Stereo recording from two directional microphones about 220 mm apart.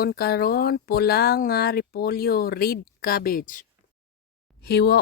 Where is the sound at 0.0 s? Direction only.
45° left (ahead or behind).